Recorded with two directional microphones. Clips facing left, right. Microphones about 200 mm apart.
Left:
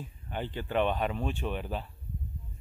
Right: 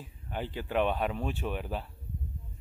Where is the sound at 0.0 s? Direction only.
5° right (ahead or behind).